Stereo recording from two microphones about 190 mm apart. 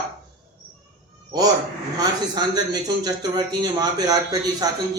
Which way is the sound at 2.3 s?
20° right (ahead or behind).